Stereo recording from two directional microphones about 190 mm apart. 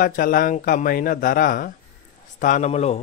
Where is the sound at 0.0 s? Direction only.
45° left (ahead or behind).